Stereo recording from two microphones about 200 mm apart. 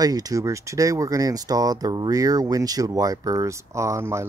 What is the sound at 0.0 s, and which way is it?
Speech, 20° right (ahead or behind).